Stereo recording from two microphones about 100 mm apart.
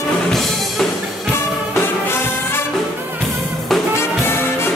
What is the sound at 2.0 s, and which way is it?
Music, 20° left (ahead or behind).